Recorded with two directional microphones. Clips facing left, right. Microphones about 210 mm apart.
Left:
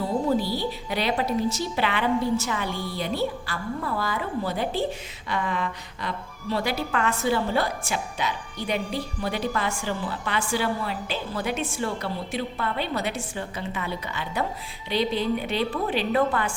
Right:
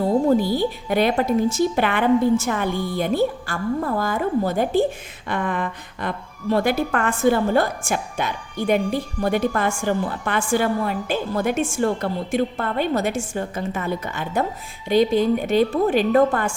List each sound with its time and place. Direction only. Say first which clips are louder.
0.0 s a woman's voice: right 6 dB; 50° right (ahead or behind)